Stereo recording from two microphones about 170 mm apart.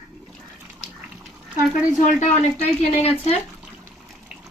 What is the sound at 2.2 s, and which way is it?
Speech, 40° left (ahead or behind).